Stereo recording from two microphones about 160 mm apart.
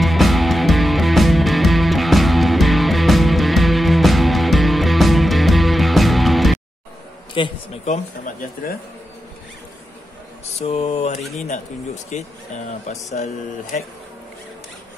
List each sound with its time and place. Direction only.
0.0 s music: centre (ahead or behind)
7.4 s speech: 30° left (ahead or behind)
7.8 s speech: 50° left (ahead or behind)
10.4 s mantra: 40° left (ahead or behind)
11.4 s speech: 45° left (ahead or behind)